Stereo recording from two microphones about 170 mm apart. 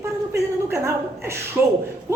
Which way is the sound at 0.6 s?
15° right (ahead or behind).